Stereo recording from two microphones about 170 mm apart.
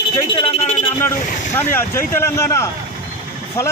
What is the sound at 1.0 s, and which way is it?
A man's voice, 15° left (ahead or behind).